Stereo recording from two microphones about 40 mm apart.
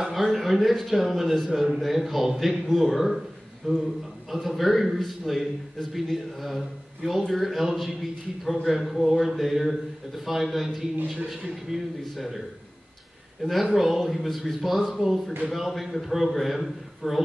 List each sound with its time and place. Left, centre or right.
0.0 s a man's voice: centre
13.4 s a man's voice: centre